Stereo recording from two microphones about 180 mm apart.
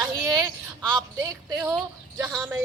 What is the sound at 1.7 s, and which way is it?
Speech, 5° right (ahead or behind).